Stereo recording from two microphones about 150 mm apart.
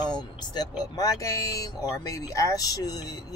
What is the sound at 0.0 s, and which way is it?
Speech, 30° left (ahead or behind).